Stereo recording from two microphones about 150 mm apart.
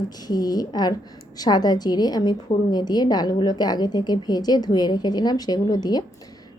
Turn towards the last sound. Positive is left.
turn(degrees=25)  # may be behind; listen again after turning